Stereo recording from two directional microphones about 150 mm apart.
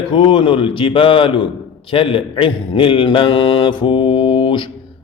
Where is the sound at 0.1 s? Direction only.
35° left (ahead or behind).